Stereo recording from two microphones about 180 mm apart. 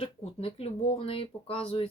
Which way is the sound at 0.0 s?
35° left (ahead or behind).